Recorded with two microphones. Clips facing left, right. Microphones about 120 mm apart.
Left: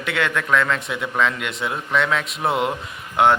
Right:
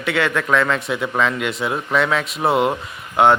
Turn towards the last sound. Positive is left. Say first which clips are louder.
# right 2 dB
turn(degrees=0)  # may be behind; listen again after turning